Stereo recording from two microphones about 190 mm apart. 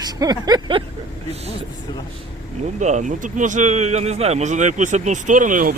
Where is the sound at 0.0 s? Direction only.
20° right (ahead or behind).